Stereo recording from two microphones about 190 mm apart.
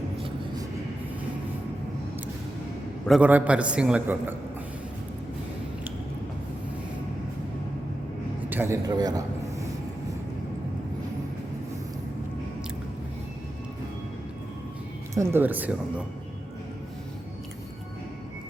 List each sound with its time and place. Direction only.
0.2 s vehicle: 25° right (ahead or behind)
3.1 s a man's voice: 5° right (ahead or behind)
8.4 s a sound: 10° right (ahead or behind)
15.1 s a man's voice: 15° right (ahead or behind)